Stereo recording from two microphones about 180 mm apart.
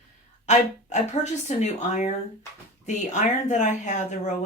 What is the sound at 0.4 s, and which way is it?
Speech, 40° left (ahead or behind).